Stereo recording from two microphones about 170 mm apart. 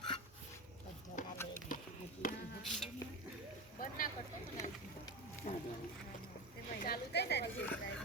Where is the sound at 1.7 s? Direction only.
50° left (ahead or behind).